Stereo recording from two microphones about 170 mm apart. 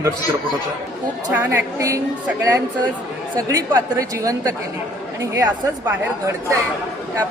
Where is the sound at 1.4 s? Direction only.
15° right (ahead or behind).